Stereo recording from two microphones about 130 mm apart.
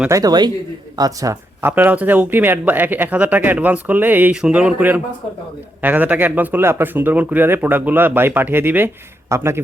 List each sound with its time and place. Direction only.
0.1 s a man's voice: 30° right (ahead or behind)
1.7 s a man's voice: 10° right (ahead or behind)